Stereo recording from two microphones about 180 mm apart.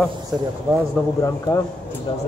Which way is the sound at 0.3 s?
Centre (ahead or behind).